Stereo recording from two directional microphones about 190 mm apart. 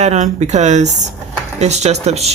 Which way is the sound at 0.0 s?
35° right (ahead or behind).